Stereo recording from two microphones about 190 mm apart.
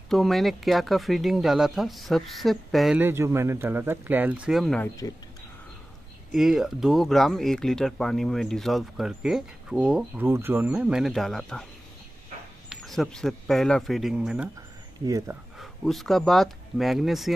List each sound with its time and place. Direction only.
0.1 s speech: centre (ahead or behind)
3.0 s speech: 10° right (ahead or behind); by 4.9 s 5° left (ahead or behind)
6.3 s speech: centre (ahead or behind)
12.6 s speech: centre (ahead or behind)
15.0 s speech: 15° right (ahead or behind)
15.6 s speech: centre (ahead or behind)